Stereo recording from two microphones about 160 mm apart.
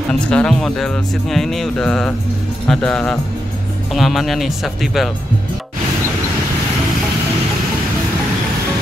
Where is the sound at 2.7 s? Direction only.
5° left (ahead or behind).